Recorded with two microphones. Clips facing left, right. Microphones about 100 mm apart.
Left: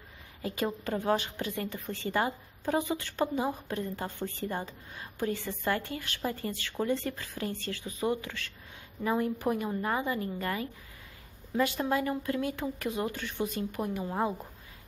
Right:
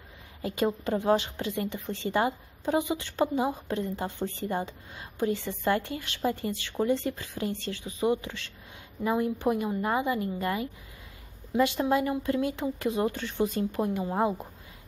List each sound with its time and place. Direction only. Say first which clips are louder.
0.6 s a woman's voice: right 5 dB; 25° right (ahead or behind)